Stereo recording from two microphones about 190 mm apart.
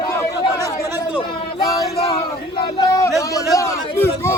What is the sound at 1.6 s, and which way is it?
Music, 15° left (ahead or behind).